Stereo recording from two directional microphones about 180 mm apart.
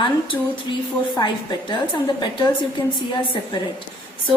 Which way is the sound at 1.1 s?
25° left (ahead or behind).